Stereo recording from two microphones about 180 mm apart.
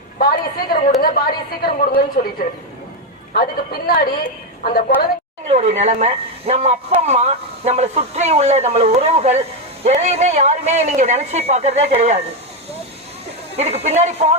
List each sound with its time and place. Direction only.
0.2 s a woman's voice: 55° left (ahead or behind)
3.3 s a woman's voice: 55° left (ahead or behind)
5.5 s speech: 40° right (ahead or behind)
13.6 s speech: 35° right (ahead or behind)